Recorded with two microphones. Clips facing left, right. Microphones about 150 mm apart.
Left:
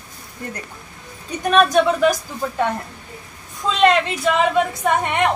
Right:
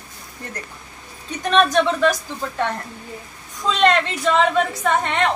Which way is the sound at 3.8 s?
10° left (ahead or behind).